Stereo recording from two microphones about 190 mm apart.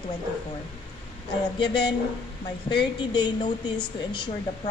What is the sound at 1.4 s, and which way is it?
Speech, 25° left (ahead or behind).